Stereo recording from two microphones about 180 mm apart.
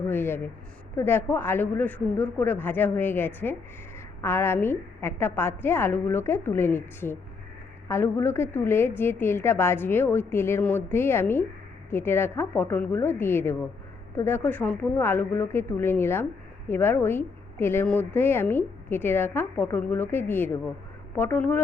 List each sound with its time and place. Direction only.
0.1 s a woman's voice: 10° left (ahead or behind)